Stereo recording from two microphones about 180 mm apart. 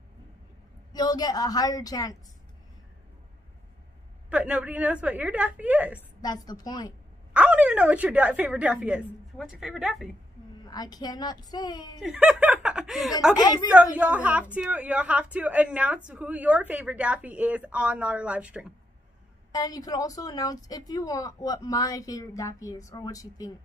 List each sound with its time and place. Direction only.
0.9 s a woman's voice: 20° left (ahead or behind)
4.3 s a woman's voice: 5° right (ahead or behind)
6.2 s a woman's voice: 20° left (ahead or behind)
7.3 s a woman's voice: 5° right (ahead or behind)
10.6 s a woman's voice: 20° left (ahead or behind)
12.0 s a woman's voice: 5° right (ahead or behind)
19.5 s a woman's voice: 20° left (ahead or behind)